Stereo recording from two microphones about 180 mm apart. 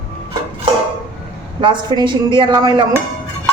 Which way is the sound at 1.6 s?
25° right (ahead or behind).